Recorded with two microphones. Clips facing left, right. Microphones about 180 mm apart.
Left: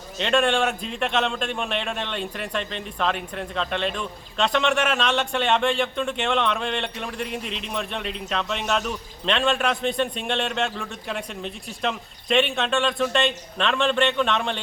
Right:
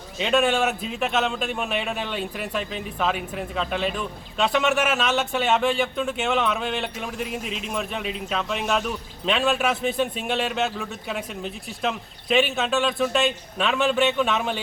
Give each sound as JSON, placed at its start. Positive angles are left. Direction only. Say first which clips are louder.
{"t": 0.2, "sound": "a man's voice", "louder": "even", "side_deg": -5}